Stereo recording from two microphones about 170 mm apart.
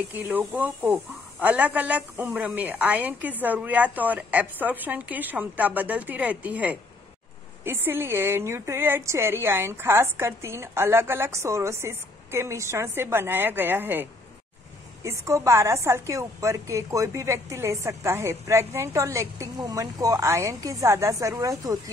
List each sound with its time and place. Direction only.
0.1 s a woman's voice: 10° right (ahead or behind)
15.0 s a woman's voice: 15° right (ahead or behind)